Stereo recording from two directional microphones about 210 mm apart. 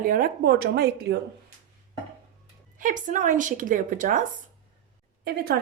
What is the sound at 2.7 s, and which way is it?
A woman's voice, 40° right (ahead or behind).